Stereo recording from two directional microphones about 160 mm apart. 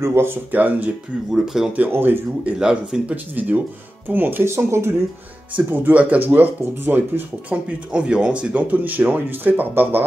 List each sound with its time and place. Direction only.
0.0 s speech: 15° right (ahead or behind)
1.9 s speech: 15° right (ahead or behind)